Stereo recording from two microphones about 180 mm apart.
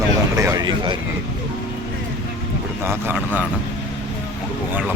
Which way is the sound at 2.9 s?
10° right (ahead or behind).